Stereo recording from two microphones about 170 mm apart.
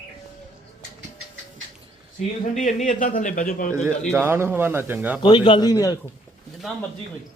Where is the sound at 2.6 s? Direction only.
45° left (ahead or behind).